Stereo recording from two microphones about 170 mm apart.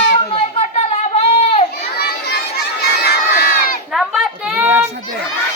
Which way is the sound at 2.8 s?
75° left (ahead or behind).